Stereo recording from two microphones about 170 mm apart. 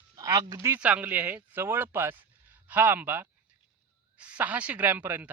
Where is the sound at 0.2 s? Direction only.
20° right (ahead or behind).